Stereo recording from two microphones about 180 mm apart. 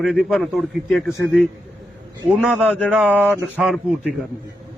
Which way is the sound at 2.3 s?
5° right (ahead or behind).